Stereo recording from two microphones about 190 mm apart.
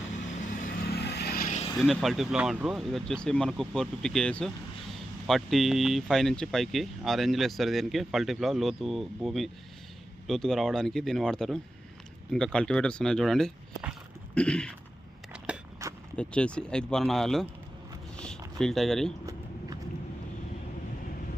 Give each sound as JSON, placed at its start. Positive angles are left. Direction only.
{"t": 0.4, "sound": "vehicle", "side_deg": 45}
{"t": 1.5, "sound": "vehicle", "side_deg": 30}
{"t": 1.8, "sound": "speech", "side_deg": 0}
{"t": 15.3, "sound": "a sound", "side_deg": -5}
{"t": 16.1, "sound": "speech", "side_deg": 5}
{"t": 18.6, "sound": "speech", "side_deg": 0}
{"t": 19.2, "sound": "keys jangling", "side_deg": -15}